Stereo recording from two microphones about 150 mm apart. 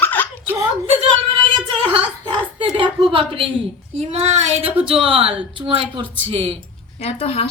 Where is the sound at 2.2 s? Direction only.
35° right (ahead or behind).